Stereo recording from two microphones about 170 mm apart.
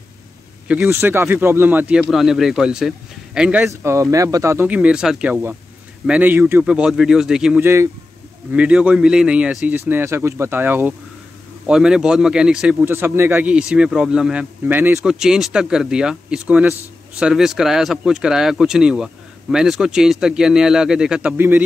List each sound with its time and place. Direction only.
0.7 s a man's voice: 10° right (ahead or behind)
3.8 s a man's voice: 15° right (ahead or behind)
7.6 s a man's voice: 15° right (ahead or behind)